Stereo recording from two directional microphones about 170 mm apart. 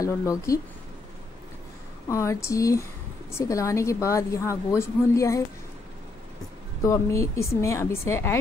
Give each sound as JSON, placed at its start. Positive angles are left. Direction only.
{"t": 0.0, "sound": "speech", "side_deg": 20}
{"t": 2.0, "sound": "speech", "side_deg": 15}
{"t": 6.8, "sound": "speech", "side_deg": 20}